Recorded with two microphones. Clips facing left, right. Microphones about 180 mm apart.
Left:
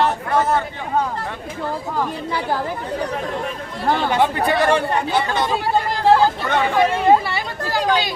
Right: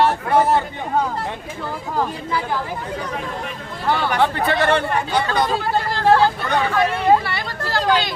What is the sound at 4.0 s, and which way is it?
Speech, 20° left (ahead or behind).